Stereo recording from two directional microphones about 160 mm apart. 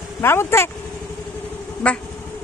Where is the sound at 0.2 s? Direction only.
15° left (ahead or behind).